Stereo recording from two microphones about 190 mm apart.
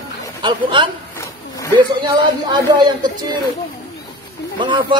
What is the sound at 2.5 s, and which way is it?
Speech, 25° right (ahead or behind).